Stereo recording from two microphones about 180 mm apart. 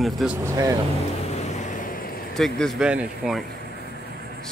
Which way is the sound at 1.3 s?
40° left (ahead or behind).